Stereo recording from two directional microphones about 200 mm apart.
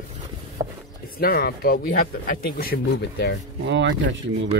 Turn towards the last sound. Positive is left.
turn(degrees=-65)  # may be behind; listen again after turning